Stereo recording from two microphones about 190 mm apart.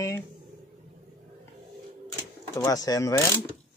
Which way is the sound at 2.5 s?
20° left (ahead or behind).